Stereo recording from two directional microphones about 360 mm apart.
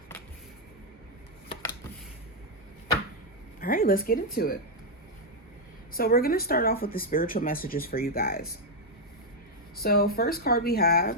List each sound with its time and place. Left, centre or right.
3.6 s speech: left
5.9 s speech: left
9.7 s speech: left